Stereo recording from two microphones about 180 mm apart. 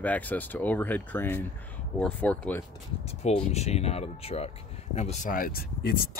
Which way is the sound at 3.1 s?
35° left (ahead or behind).